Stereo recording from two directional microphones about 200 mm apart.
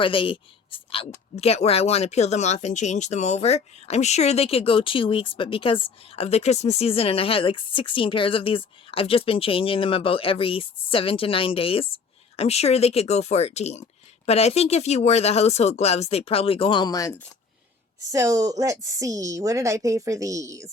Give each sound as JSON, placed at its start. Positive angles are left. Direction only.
{"t": 0.0, "sound": "speech", "side_deg": 25}
{"t": 18.1, "sound": "a woman's voice", "side_deg": -15}